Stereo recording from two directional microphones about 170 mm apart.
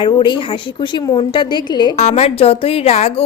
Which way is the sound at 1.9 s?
40° left (ahead or behind).